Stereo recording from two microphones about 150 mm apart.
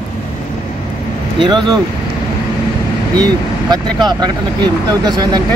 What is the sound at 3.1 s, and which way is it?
Speech, 25° right (ahead or behind).